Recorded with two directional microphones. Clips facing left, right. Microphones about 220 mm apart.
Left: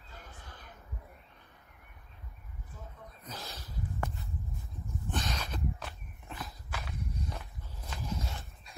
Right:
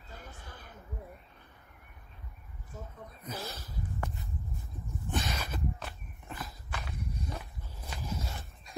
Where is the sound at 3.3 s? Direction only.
5° right (ahead or behind).